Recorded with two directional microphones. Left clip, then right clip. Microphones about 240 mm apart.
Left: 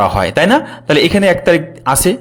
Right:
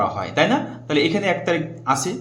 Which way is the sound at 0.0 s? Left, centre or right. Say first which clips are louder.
Left 8 dB; left.